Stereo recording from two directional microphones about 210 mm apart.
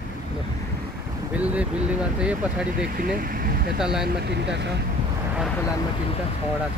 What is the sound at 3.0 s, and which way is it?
Speech, 45° right (ahead or behind).